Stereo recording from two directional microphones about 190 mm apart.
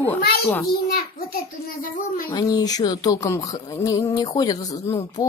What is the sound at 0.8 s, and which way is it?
A child's voice, 50° left (ahead or behind).